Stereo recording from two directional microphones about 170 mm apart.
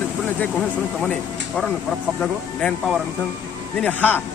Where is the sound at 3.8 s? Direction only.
10° left (ahead or behind).